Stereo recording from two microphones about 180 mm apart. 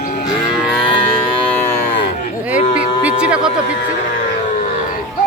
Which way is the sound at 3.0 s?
5° right (ahead or behind).